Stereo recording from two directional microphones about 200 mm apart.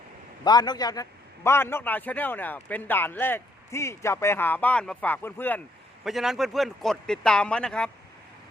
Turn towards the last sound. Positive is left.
turn(degrees=5)  # may be behind; listen again after turning